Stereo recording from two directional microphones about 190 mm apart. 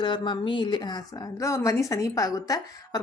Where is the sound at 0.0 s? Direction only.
25° left (ahead or behind).